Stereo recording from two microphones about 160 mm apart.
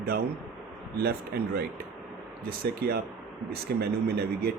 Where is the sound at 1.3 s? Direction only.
85° right.